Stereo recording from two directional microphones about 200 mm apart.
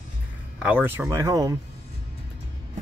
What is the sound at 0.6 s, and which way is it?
Speech, 10° right (ahead or behind).